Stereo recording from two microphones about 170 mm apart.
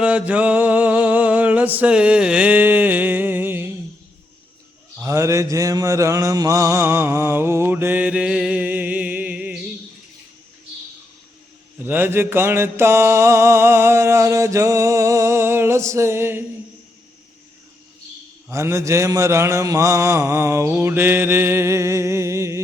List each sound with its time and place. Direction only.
0.0 s a sound: 10° right (ahead or behind)
5.0 s mantra: 15° right (ahead or behind)
11.8 s mantra: 10° right (ahead or behind)
18.4 s mantra: 15° right (ahead or behind)